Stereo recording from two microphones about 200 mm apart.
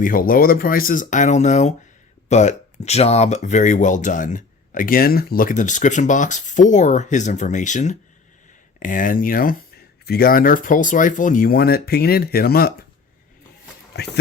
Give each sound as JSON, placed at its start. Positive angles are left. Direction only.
{"t": 0.0, "sound": "speech", "side_deg": 45}